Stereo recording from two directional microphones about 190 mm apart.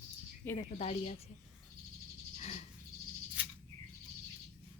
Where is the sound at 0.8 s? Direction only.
35° left (ahead or behind).